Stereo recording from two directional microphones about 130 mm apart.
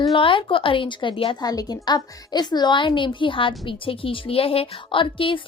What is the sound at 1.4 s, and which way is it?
A woman's voice, 30° left (ahead or behind).